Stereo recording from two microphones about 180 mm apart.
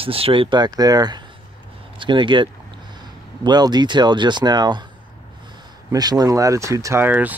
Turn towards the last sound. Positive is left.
turn(degrees=-10)  # may be behind; listen again after turning